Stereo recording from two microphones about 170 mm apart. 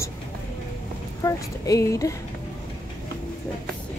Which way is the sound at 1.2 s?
20° left (ahead or behind).